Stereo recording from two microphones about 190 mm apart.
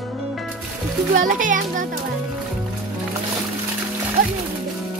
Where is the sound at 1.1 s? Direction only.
45° right (ahead or behind).